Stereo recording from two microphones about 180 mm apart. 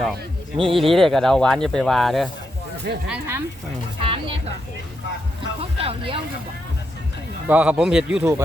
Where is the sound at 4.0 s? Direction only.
30° right (ahead or behind).